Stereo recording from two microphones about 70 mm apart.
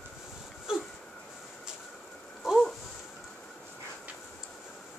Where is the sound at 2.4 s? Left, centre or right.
Centre.